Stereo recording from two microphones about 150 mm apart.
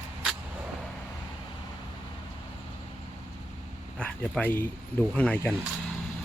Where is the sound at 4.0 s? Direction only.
5° left (ahead or behind).